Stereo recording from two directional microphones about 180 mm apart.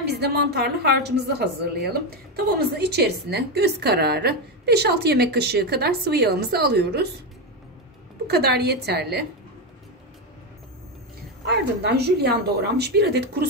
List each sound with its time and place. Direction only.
0.2 s a woman's voice: 65° right (ahead or behind)
8.3 s a woman's voice: 65° right (ahead or behind)
11.4 s a woman's voice: 65° right (ahead or behind)